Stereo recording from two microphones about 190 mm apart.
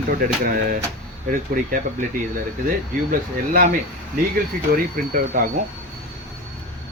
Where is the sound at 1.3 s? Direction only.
45° right (ahead or behind).